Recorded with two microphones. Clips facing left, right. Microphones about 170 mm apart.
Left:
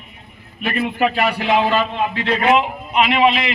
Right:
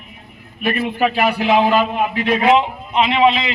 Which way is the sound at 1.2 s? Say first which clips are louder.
Right 2 dB; 10° right (ahead or behind).